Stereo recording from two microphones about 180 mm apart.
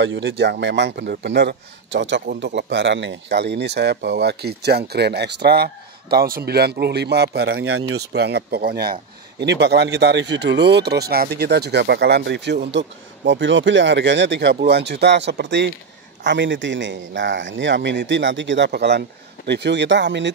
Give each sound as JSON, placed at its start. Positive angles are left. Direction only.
{"t": 0.0, "sound": "a man's voice", "side_deg": -85}
{"t": 9.4, "sound": "a man's voice", "side_deg": -70}
{"t": 16.3, "sound": "a man's voice", "side_deg": -90}